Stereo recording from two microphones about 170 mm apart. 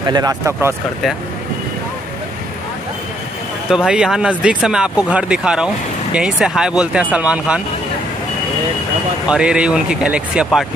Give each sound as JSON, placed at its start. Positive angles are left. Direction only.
{"t": 0.0, "sound": "speech", "side_deg": -20}
{"t": 3.6, "sound": "speech", "side_deg": -5}
{"t": 9.3, "sound": "speech", "side_deg": -5}